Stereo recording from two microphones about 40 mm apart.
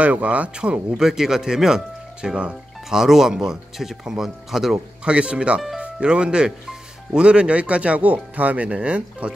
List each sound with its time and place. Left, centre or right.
0.0 s speech: right
0.6 s speech: right
1.0 s speech: centre
2.2 s speech: right
2.9 s speech: centre
5.0 s speech: right